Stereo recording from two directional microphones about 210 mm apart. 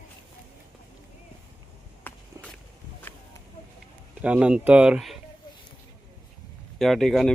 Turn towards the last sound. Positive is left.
turn(degrees=0)  # may be behind; listen again after turning